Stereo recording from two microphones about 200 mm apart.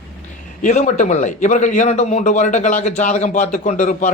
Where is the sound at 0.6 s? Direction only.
35° left (ahead or behind).